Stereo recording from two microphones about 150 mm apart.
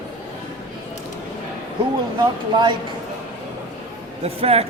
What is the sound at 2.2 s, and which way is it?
Speech, 30° right (ahead or behind).